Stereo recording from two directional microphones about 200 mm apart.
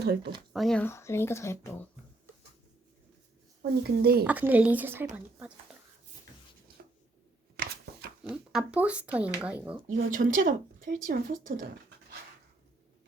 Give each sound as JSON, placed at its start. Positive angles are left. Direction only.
{"t": 0.0, "sound": "speech", "side_deg": -55}
{"t": 0.5, "sound": "speech", "side_deg": 0}
{"t": 3.6, "sound": "a woman's voice", "side_deg": -50}
{"t": 4.2, "sound": "speech", "side_deg": -10}
{"t": 5.7, "sound": "a sound", "side_deg": -5}
{"t": 6.8, "sound": "a sound", "side_deg": -55}
{"t": 7.5, "sound": "scissors", "side_deg": -50}
{"t": 8.2, "sound": "speech", "side_deg": -5}
{"t": 9.9, "sound": "a woman's voice", "side_deg": -40}